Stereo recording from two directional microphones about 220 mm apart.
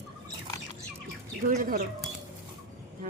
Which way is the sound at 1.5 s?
40° right (ahead or behind).